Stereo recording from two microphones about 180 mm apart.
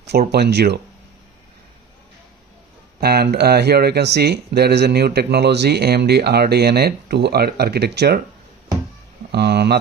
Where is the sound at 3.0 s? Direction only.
60° right (ahead or behind).